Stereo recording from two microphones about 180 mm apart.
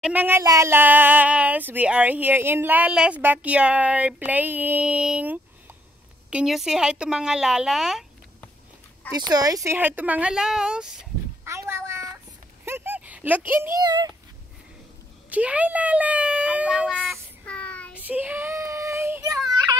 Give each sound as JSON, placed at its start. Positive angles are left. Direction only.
{"t": 0.0, "sound": "speech", "side_deg": -10}
{"t": 9.2, "sound": "speech", "side_deg": -20}
{"t": 11.4, "sound": "a sound", "side_deg": -15}
{"t": 15.2, "sound": "speech", "side_deg": -10}
{"t": 17.5, "sound": "child singing", "side_deg": 5}
{"t": 17.9, "sound": "child singing", "side_deg": -10}